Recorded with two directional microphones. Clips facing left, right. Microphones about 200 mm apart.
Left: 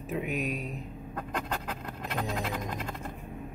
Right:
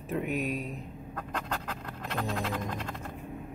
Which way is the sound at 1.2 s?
10° left (ahead or behind).